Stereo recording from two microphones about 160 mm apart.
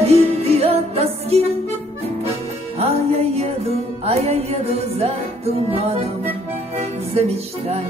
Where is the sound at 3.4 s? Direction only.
40° right (ahead or behind).